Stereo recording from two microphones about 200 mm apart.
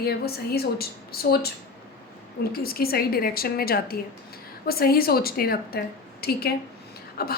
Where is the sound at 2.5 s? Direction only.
50° left (ahead or behind).